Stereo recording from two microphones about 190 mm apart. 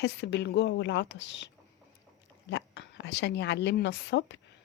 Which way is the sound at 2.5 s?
65° left (ahead or behind).